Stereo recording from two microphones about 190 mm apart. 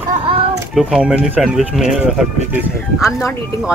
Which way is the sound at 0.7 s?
Centre (ahead or behind).